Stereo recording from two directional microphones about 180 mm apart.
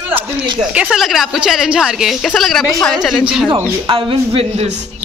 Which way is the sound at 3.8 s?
25° right (ahead or behind).